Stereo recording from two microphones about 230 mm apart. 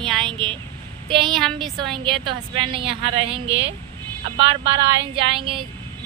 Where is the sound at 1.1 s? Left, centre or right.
Right.